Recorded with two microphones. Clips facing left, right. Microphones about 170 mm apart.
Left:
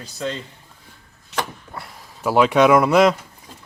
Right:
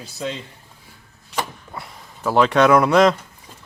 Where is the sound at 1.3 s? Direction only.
Centre (ahead or behind).